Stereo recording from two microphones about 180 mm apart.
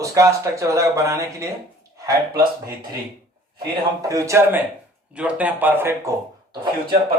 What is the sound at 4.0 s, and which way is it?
Speech, 20° right (ahead or behind).